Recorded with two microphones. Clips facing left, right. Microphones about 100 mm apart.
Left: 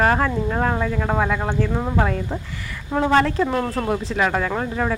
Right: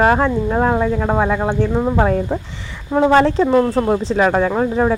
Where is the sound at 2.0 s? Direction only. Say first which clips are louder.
Right 6 dB; 30° right (ahead or behind).